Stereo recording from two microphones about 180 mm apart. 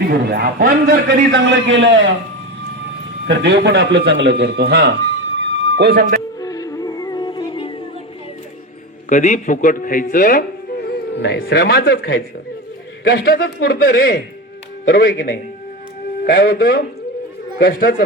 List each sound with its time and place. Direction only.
0.0 s a man's voice: 60° right (ahead or behind); by 2.1 s 90° right
3.2 s a man's voice: 70° right (ahead or behind)
5.4 s a sound: 70° right (ahead or behind)
6.4 s music: 20° left (ahead or behind)
9.0 s a man's voice: 45° left (ahead or behind)
11.2 s a man's voice: 65° left (ahead or behind)